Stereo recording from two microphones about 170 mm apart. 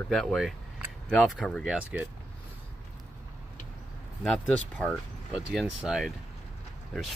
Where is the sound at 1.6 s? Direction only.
10° right (ahead or behind).